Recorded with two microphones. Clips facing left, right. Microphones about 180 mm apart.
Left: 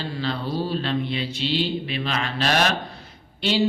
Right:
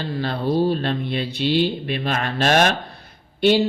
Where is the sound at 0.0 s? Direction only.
50° right (ahead or behind).